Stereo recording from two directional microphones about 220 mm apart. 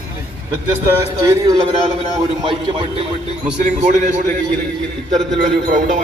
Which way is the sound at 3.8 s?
35° right (ahead or behind).